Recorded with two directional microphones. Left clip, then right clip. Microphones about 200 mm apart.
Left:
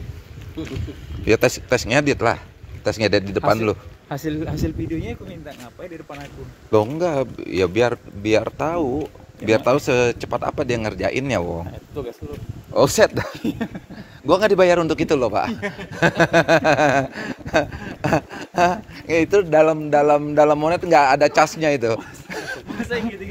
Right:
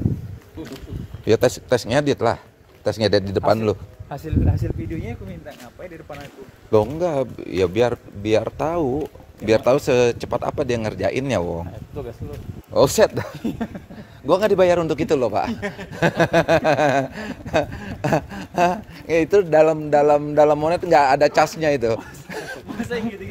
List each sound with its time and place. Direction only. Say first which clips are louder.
1.2 s speech: even; 15° right (ahead or behind)
4.1 s speech: left 1 dB; 35° left (ahead or behind)
6.7 s speech: even; 15° right (ahead or behind)
8.9 s speech: even; 10° right (ahead or behind)
9.7 s speech: right 2 dB; 25° right (ahead or behind)
11.9 s speech: left 4 dB; 45° left (ahead or behind)
12.7 s speech: even; 15° right (ahead or behind)
13.4 s a sound: left 2 dB; 60° left (ahead or behind)
14.2 s speech: left 1 dB; 5° right (ahead or behind)
22.7 s speech: left 1 dB; 5° right (ahead or behind)